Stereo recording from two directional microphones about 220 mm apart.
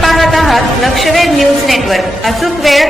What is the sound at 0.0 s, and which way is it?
A woman's voice, centre (ahead or behind).